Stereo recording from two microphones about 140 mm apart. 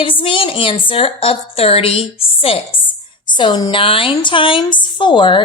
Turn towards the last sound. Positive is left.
turn(degrees=35)  # may be behind; listen again after turning